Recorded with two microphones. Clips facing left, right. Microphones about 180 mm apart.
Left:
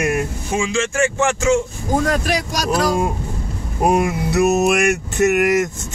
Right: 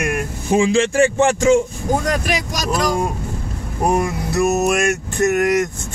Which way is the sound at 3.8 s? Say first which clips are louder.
Left 2 dB; 15° left (ahead or behind).